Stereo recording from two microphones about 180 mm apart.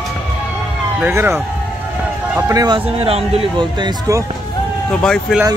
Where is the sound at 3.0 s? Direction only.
30° right (ahead or behind).